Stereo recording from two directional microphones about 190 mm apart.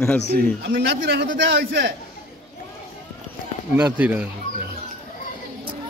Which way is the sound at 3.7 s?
5° right (ahead or behind).